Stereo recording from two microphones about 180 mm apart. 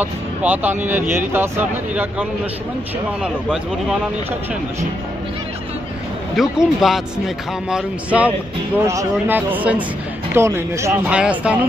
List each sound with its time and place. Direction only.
0.0 s speech: 10° right (ahead or behind)
6.3 s speech: centre (ahead or behind)